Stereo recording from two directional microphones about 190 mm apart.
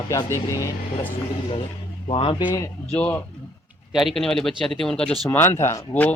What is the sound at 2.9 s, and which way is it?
Speech, 5° left (ahead or behind).